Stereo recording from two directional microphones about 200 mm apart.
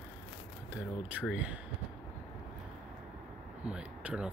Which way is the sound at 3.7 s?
5° right (ahead or behind).